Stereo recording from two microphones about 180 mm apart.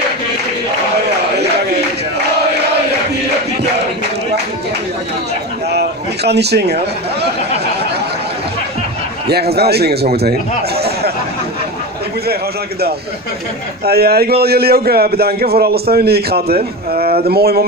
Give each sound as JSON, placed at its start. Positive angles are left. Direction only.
{"t": 5.7, "sound": "a sound", "side_deg": -65}
{"t": 9.3, "sound": "a man's voice", "side_deg": -60}
{"t": 13.8, "sound": "a man's voice", "side_deg": -60}